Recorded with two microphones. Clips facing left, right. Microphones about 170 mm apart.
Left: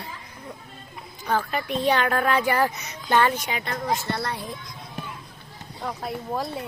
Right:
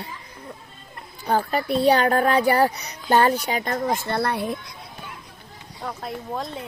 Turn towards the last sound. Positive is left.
turn(degrees=5)  # may be behind; listen again after turning